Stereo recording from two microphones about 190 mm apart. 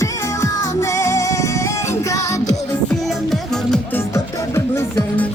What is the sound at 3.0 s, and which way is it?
Music, centre (ahead or behind).